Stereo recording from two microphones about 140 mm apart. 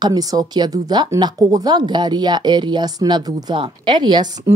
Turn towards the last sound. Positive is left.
turn(degrees=-30)  # may be behind; listen again after turning